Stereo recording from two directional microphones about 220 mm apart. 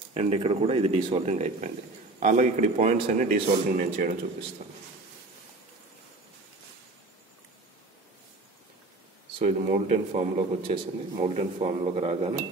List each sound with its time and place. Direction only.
0.1 s a man's voice: 30° right (ahead or behind)
9.4 s a man's voice: 30° right (ahead or behind)